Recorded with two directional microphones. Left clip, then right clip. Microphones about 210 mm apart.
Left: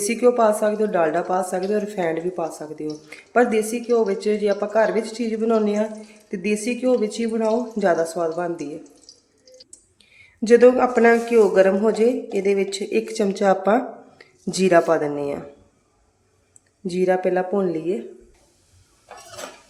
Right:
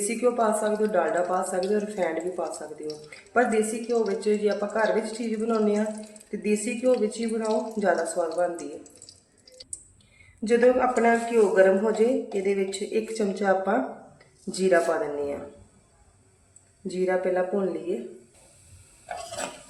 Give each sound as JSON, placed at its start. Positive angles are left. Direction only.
{"t": 0.1, "sound": "speech", "side_deg": 50}
{"t": 10.4, "sound": "a man's voice", "side_deg": 55}
{"t": 16.8, "sound": "speech", "side_deg": 50}